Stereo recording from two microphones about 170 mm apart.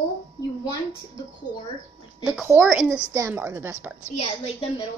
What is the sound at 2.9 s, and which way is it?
Speech, 20° right (ahead or behind).